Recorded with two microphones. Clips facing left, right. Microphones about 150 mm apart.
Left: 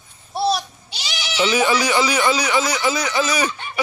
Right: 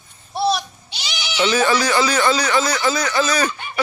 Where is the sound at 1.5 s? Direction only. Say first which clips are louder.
Right 1 dB; 15° left (ahead or behind).